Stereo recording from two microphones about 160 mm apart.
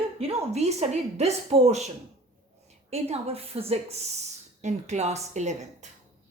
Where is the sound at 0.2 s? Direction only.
40° right (ahead or behind).